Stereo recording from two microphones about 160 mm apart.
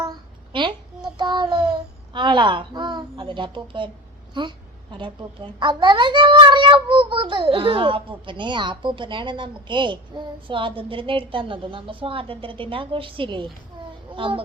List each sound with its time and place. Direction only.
0.0 s child singing: 25° right (ahead or behind)
2.1 s a woman's voice: 30° right (ahead or behind)